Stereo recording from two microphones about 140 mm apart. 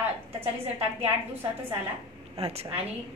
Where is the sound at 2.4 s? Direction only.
45° right (ahead or behind).